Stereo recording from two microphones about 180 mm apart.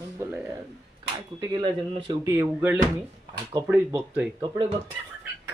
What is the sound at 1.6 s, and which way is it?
Speech, 30° right (ahead or behind).